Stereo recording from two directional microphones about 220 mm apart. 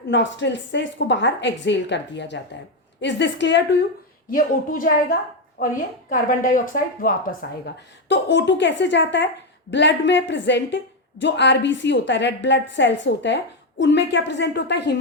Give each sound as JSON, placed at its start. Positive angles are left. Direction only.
{"t": 0.1, "sound": "speech", "side_deg": 55}
{"t": 4.3, "sound": "speech", "side_deg": 40}